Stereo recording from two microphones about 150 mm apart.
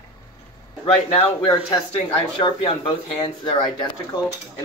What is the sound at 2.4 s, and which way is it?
Speech, 35° left (ahead or behind).